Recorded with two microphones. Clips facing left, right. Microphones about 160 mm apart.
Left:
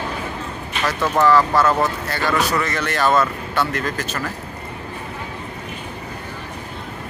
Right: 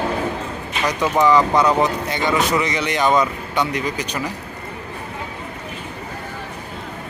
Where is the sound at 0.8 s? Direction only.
15° right (ahead or behind).